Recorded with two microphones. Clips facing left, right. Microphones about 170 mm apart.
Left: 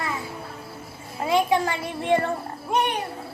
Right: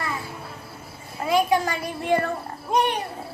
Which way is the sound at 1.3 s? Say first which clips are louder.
Even; 25° left (ahead or behind).